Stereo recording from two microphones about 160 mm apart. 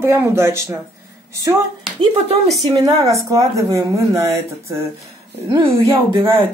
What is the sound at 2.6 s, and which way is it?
A woman's voice, 20° right (ahead or behind).